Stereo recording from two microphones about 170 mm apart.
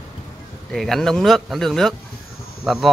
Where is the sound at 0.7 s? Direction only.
Centre (ahead or behind).